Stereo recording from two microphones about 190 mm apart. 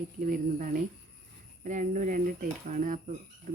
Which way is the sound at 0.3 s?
45° right (ahead or behind).